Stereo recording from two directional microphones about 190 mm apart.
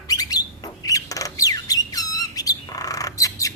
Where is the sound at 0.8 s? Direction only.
20° left (ahead or behind).